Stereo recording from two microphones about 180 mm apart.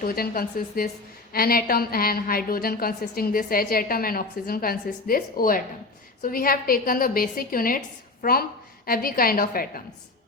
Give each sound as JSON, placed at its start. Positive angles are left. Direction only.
{"t": 0.0, "sound": "a woman's voice", "side_deg": 55}